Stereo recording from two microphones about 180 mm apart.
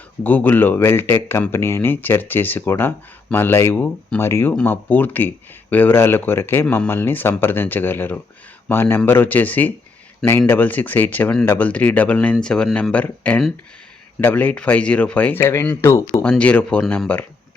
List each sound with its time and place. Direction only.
0.2 s speech: 10° left (ahead or behind)